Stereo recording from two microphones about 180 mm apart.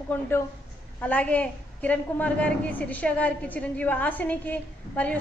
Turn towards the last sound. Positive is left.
turn(degrees=10)  # may be behind; listen again after turning